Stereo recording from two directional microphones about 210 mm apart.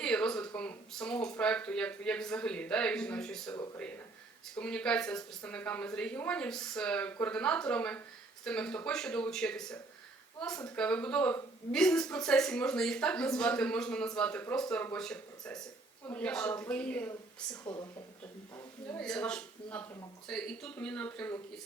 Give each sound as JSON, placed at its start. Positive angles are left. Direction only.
{"t": 0.0, "sound": "a woman's voice", "side_deg": 5}
{"t": 17.5, "sound": "speech", "side_deg": 20}
{"t": 18.5, "sound": "a woman's voice", "side_deg": 5}